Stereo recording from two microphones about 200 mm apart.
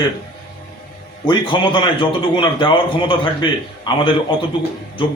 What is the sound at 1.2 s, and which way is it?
A man's voice, 20° left (ahead or behind).